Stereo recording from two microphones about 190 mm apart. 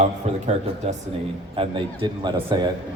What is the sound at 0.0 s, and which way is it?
A man's voice, 35° right (ahead or behind).